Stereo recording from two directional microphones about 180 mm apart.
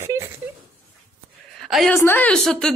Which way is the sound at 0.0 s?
15° right (ahead or behind).